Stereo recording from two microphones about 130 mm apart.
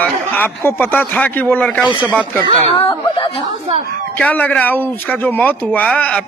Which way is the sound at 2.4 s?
50° right (ahead or behind).